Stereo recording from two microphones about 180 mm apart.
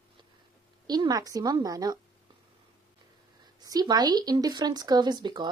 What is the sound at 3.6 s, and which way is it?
Speech, 20° right (ahead or behind).